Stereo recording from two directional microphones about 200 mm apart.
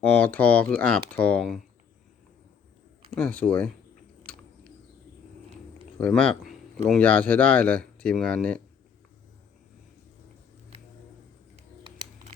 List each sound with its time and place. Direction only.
0.0 s speech: 5° left (ahead or behind)
3.2 s speech: 5° left (ahead or behind)
4.3 s chewing: 5° left (ahead or behind)
6.0 s speech: 5° left (ahead or behind)
11.5 s music: 25° right (ahead or behind)